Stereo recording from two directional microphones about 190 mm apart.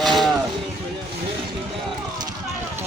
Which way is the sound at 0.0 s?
Centre (ahead or behind).